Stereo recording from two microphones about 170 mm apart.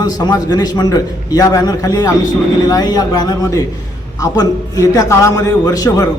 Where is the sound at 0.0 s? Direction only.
20° left (ahead or behind).